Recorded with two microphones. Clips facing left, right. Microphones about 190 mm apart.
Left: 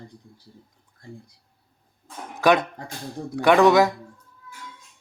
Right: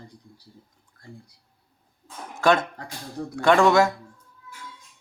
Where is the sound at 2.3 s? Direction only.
15° left (ahead or behind).